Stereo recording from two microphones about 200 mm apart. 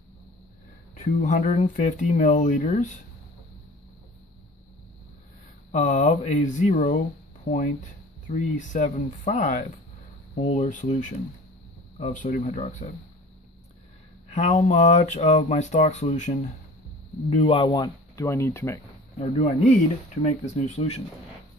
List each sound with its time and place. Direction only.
1.2 s speech: 40° left (ahead or behind)
5.7 s speech: 35° left (ahead or behind)
14.3 s speech: 35° left (ahead or behind); by 18.8 s 15° left (ahead or behind)
19.1 s speech: 35° left (ahead or behind)